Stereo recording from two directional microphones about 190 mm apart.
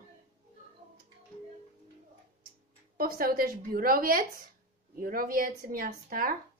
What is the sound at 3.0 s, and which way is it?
A woman's voice, 50° right (ahead or behind).